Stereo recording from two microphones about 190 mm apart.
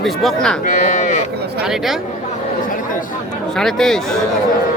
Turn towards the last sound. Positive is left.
turn(degrees=0)  # may be behind; listen again after turning